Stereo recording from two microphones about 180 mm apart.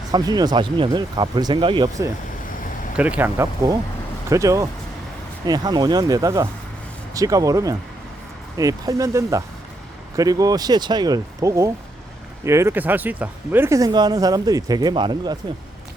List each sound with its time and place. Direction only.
0.1 s speech: 20° right (ahead or behind)
2.9 s speech: 5° right (ahead or behind); by 15.4 s 25° right (ahead or behind)